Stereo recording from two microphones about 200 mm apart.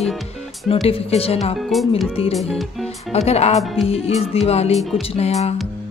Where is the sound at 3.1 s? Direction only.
30° left (ahead or behind).